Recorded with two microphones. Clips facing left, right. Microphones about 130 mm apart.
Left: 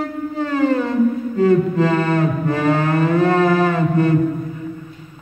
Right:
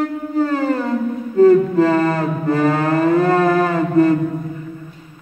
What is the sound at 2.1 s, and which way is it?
Music, 40° right (ahead or behind).